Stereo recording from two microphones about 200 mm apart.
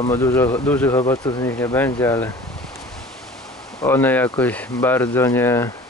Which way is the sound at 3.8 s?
10° left (ahead or behind).